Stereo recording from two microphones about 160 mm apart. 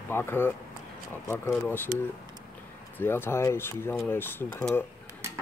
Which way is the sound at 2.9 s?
15° left (ahead or behind).